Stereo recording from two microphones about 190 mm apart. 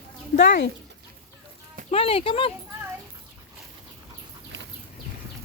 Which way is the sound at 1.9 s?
30° left (ahead or behind).